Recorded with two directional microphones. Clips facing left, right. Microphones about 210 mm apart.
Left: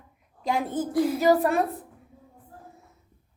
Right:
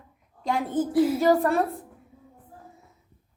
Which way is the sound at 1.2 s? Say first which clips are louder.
Even; 10° left (ahead or behind).